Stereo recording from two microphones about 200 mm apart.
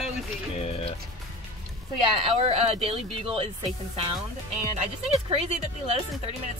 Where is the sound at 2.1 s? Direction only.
30° right (ahead or behind).